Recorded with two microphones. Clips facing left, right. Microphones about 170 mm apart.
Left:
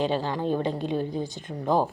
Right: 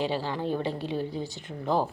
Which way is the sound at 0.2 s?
20° left (ahead or behind).